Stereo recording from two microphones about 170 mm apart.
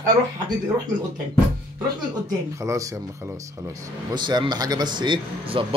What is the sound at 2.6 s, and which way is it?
Speech, 15° right (ahead or behind).